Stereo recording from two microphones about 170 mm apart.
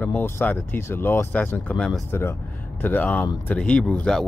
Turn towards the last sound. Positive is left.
turn(degrees=5)  # may be behind; listen again after turning